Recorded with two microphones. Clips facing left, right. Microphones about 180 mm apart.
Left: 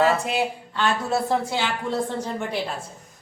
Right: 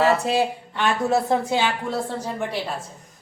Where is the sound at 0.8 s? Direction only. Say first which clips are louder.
Right 2 dB; 20° right (ahead or behind).